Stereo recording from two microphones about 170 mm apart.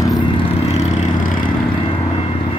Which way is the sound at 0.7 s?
40° left (ahead or behind).